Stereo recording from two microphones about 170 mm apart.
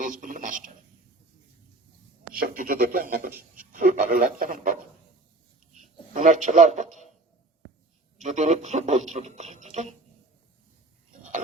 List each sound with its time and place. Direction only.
0.0 s speech: 50° right (ahead or behind)
2.3 s speech: 55° right (ahead or behind)
8.2 s speech: 45° right (ahead or behind)